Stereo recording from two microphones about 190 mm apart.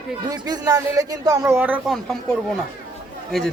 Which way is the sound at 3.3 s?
Centre (ahead or behind).